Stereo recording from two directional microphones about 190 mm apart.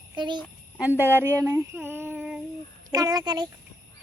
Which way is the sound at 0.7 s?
10° right (ahead or behind).